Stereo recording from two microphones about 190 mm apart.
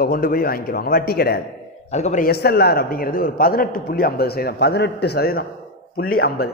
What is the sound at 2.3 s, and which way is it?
Speech, 55° left (ahead or behind).